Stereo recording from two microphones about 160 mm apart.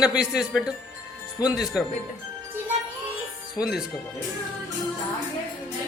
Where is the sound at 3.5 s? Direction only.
5° right (ahead or behind).